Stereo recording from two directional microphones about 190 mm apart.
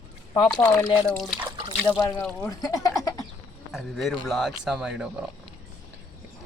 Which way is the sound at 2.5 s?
20° left (ahead or behind).